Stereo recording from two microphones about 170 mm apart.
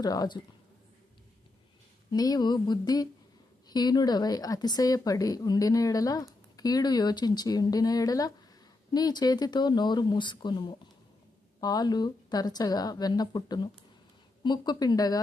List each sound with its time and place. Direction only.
0.0 s speech: 25° left (ahead or behind)
2.1 s speech: 20° left (ahead or behind)